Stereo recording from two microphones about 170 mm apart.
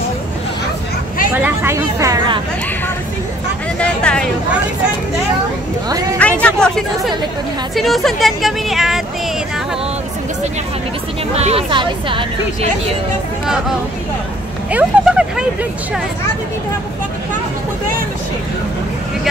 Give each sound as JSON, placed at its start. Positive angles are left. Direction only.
{"t": 1.4, "sound": "speech", "side_deg": -15}
{"t": 3.8, "sound": "a sound", "side_deg": 5}
{"t": 6.4, "sound": "chatter", "side_deg": 5}
{"t": 7.7, "sound": "speech", "side_deg": 0}
{"t": 11.3, "sound": "speech", "side_deg": -35}
{"t": 14.7, "sound": "speech", "side_deg": -5}